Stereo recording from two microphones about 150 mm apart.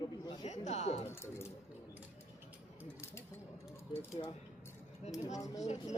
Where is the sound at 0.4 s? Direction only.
50° left (ahead or behind).